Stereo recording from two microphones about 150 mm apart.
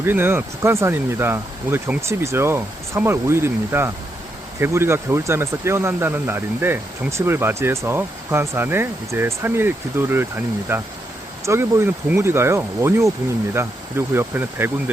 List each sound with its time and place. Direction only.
0.0 s speech: 15° right (ahead or behind)